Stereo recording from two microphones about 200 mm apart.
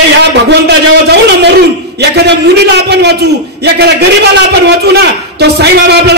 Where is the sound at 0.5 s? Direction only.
55° right (ahead or behind).